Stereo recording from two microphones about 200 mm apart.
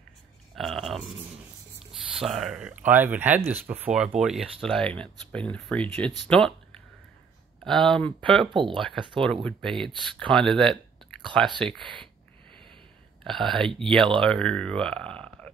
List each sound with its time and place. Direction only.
0.6 s a sound: centre (ahead or behind)
1.9 s speech: centre (ahead or behind)
8.5 s speech: 25° right (ahead or behind)
9.2 s speech: 5° left (ahead or behind)
11.8 s speech: 25° right (ahead or behind)
13.2 s speech: centre (ahead or behind)